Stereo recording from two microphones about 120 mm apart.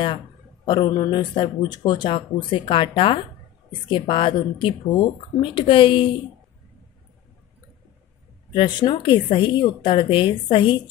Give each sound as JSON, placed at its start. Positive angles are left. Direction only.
{"t": 0.7, "sound": "a woman's voice", "side_deg": 40}
{"t": 8.5, "sound": "a woman's voice", "side_deg": 40}